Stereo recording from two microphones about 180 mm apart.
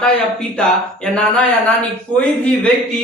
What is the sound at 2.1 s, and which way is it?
Speech, 25° right (ahead or behind).